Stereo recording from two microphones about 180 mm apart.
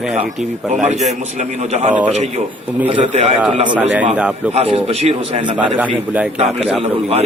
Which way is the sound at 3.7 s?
10° right (ahead or behind).